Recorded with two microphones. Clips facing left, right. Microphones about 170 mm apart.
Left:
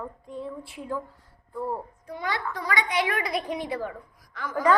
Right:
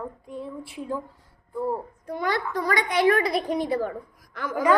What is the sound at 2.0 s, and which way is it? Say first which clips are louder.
A woman's voice: right 5 dB; 50° right (ahead or behind).